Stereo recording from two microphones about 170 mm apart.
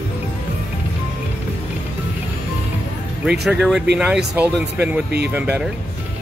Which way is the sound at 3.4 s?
Centre (ahead or behind).